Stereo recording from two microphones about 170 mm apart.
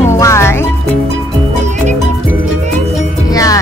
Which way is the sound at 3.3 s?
20° left (ahead or behind).